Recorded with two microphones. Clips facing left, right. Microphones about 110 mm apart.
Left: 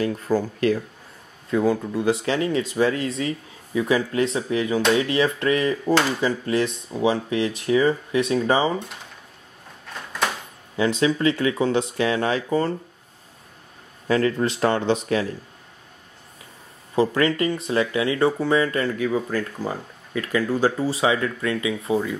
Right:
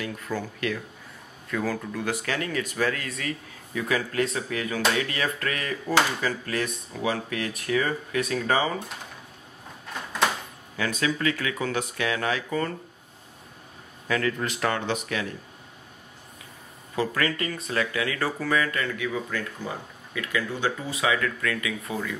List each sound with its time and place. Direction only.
0.0 s speech: 35° left (ahead or behind)
10.8 s speech: 25° left (ahead or behind)
14.0 s speech: 30° left (ahead or behind)
16.9 s speech: 30° left (ahead or behind)